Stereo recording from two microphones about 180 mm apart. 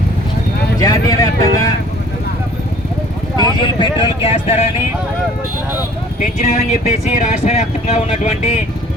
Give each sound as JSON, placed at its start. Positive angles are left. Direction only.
{"t": 0.8, "sound": "speech", "side_deg": 20}
{"t": 3.6, "sound": "speech", "side_deg": 30}
{"t": 6.1, "sound": "speech", "side_deg": 40}